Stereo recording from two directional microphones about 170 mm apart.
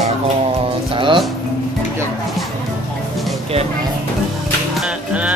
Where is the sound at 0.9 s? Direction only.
30° right (ahead or behind).